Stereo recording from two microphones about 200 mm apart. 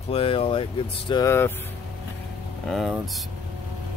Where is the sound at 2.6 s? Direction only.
Centre (ahead or behind).